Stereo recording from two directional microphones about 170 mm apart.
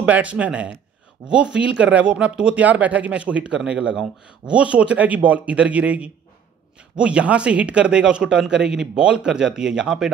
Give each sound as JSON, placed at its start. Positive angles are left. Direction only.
{"t": 0.0, "sound": "a man's voice", "side_deg": -10}